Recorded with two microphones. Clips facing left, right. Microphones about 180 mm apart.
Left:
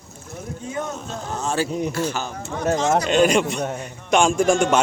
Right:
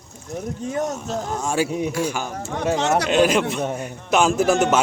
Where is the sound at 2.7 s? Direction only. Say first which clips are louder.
Left 1 dB; 65° right (ahead or behind).